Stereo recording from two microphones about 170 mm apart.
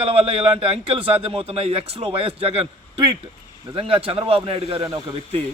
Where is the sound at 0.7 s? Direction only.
35° right (ahead or behind).